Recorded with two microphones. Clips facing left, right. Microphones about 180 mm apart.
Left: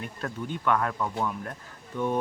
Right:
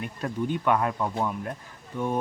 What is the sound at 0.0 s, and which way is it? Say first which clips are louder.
Speech: right 5 dB; 15° right (ahead or behind).